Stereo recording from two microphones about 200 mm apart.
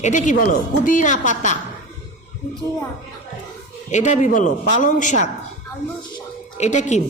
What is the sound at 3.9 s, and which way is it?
A woman's voice, 35° left (ahead or behind).